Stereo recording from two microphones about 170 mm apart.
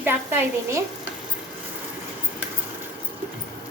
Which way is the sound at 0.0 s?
10° right (ahead or behind).